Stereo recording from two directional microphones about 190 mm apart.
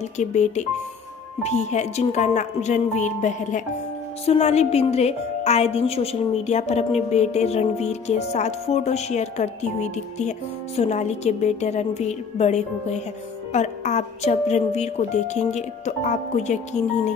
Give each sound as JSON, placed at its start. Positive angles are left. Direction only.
{"t": 0.2, "sound": "a woman's voice", "side_deg": 40}